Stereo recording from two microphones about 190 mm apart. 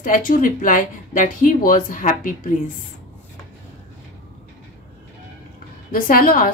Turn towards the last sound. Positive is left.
turn(degrees=45)  # may be behind; listen again after turning